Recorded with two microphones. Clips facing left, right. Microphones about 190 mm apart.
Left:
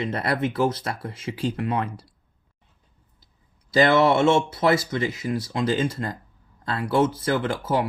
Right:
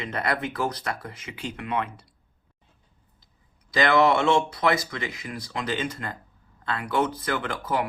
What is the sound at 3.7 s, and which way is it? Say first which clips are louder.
Speech: left 3 dB; 30° left (ahead or behind).